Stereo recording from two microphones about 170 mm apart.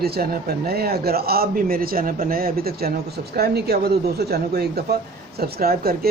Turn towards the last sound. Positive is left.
turn(degrees=-60)  # may be behind; listen again after turning